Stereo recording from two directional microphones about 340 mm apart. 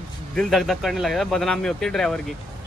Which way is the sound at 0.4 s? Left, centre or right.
Centre.